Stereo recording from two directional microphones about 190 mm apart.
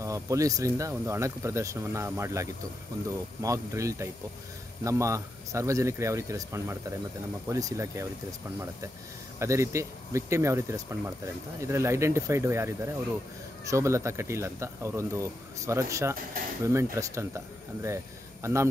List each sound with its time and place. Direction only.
0.0 s speech: 15° right (ahead or behind)